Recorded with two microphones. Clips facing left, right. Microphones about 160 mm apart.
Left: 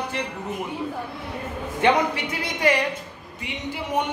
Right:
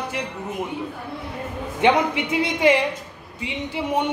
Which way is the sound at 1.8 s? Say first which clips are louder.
Right 2 dB; 20° right (ahead or behind).